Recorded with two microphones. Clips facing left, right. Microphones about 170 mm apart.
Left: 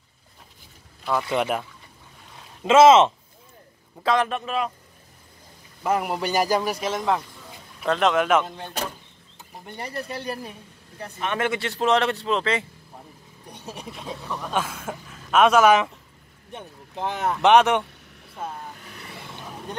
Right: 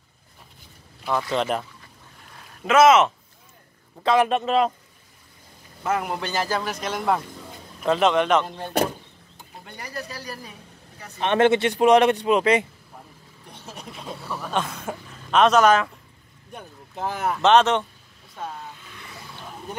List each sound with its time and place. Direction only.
1.3 s speech: 10° left (ahead or behind)
2.6 s speech: 25° left (ahead or behind)
4.0 s speech: 10° left (ahead or behind)
4.3 s a man's voice: 25° right (ahead or behind)
5.9 s speech: 5° left (ahead or behind)
7.0 s a man's voice: 5° right (ahead or behind)
9.8 s speech: 25° left (ahead or behind)
11.1 s a man's voice: 25° right (ahead or behind)
13.5 s vehicle: 15° left (ahead or behind)
13.9 s a man's voice: centre (ahead or behind)
17.0 s a man's voice: centre (ahead or behind)
17.4 s speech: 10° left (ahead or behind)